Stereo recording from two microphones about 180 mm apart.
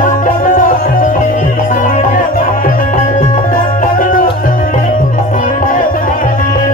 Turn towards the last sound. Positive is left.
turn(degrees=50)  # may be behind; listen again after turning